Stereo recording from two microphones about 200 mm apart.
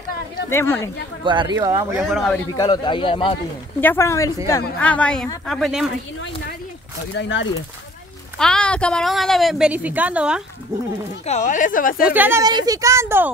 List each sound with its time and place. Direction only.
0.5 s a woman's voice: 10° left (ahead or behind)
1.2 s speech: 25° right (ahead or behind)
2.0 s a woman's voice: centre (ahead or behind)
2.5 s a man's voice: 20° left (ahead or behind)
3.8 s a woman's voice: 10° left (ahead or behind)
7.2 s speech: 65° left (ahead or behind)
8.4 s a woman's voice: 5° left (ahead or behind)
11.2 s speech: 35° left (ahead or behind)
12.0 s speech: 10° right (ahead or behind)